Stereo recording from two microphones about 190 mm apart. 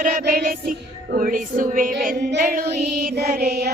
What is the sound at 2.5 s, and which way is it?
Child singing, 50° right (ahead or behind).